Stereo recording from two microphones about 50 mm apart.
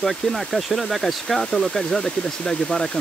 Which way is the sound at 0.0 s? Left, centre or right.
Centre.